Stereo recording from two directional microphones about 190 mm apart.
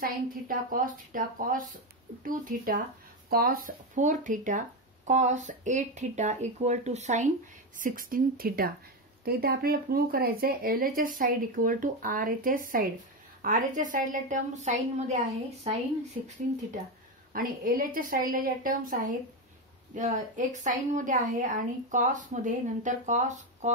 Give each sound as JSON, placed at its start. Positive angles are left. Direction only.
{"t": 0.0, "sound": "speech", "side_deg": -45}
{"t": 7.8, "sound": "speech", "side_deg": -45}
{"t": 16.1, "sound": "speech", "side_deg": -35}
{"t": 17.3, "sound": "speech", "side_deg": -50}